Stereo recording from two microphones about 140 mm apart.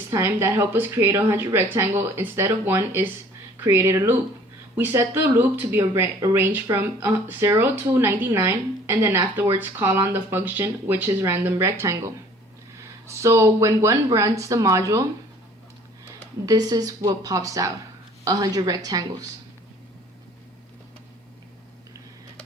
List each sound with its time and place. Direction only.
0.1 s speech: 20° right (ahead or behind)
13.1 s speech: 20° right (ahead or behind)
16.5 s speech: 30° right (ahead or behind)